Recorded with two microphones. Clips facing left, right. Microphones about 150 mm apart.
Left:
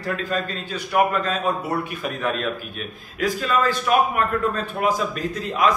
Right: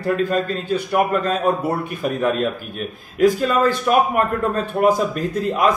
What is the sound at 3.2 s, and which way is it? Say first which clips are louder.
A man's voice: right 6 dB; 50° right (ahead or behind).